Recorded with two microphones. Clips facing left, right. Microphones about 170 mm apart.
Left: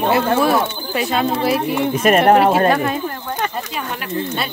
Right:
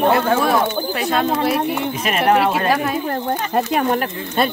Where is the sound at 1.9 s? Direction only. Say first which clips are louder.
Left 5 dB; 50° left (ahead or behind).